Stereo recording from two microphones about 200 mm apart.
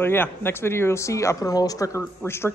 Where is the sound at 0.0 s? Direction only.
10° left (ahead or behind).